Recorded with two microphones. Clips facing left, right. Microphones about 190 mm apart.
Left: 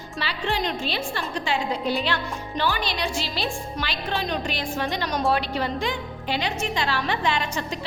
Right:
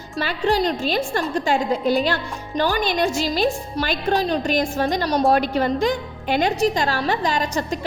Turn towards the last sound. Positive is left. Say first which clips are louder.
# right 4 dB
turn(degrees=-40)  # may be behind; listen again after turning